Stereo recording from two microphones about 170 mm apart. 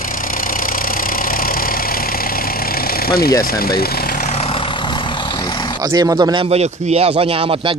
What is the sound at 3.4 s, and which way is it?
Vehicle, 65° left (ahead or behind).